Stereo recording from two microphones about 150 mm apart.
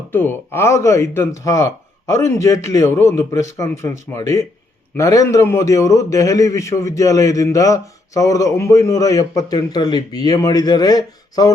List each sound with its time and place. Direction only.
0.1 s a man's voice: 15° left (ahead or behind)